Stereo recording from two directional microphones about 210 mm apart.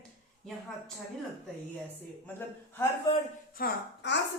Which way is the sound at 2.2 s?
10° left (ahead or behind).